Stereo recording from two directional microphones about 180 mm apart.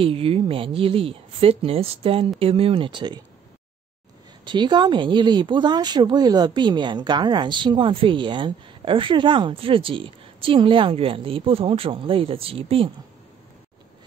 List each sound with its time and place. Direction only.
0.0 s speech: 30° right (ahead or behind)
4.5 s speech: 25° right (ahead or behind)